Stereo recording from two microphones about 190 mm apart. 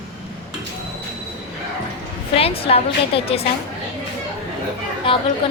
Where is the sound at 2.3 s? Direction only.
30° left (ahead or behind).